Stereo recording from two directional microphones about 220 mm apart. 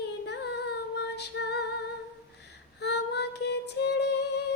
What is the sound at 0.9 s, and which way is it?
Female singing, 50° left (ahead or behind).